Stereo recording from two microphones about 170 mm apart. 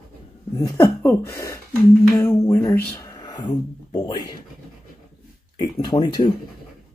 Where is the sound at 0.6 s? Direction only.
20° left (ahead or behind).